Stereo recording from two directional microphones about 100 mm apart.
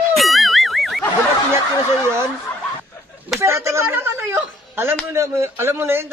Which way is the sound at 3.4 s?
30° right (ahead or behind).